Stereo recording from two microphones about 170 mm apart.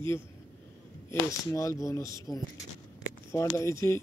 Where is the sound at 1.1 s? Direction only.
15° left (ahead or behind).